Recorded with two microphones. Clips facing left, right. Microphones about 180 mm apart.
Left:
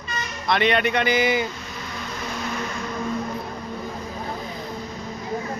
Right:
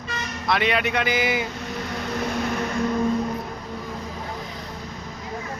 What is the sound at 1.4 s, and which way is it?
Vehicle, 60° right (ahead or behind).